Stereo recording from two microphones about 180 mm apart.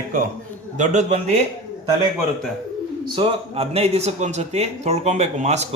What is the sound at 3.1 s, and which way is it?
Speech, 30° right (ahead or behind).